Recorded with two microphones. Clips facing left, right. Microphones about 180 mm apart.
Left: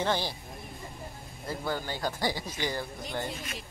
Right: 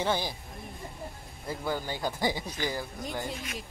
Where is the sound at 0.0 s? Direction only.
10° right (ahead or behind).